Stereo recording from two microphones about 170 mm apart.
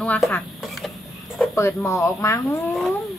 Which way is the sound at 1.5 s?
15° left (ahead or behind).